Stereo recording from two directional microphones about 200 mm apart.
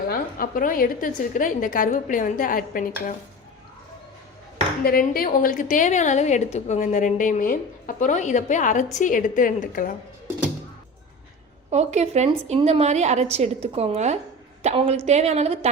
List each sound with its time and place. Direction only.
0.1 s a woman's voice: 45° left (ahead or behind)
4.8 s a woman's voice: 45° left (ahead or behind)
11.7 s a woman's voice: 35° right (ahead or behind)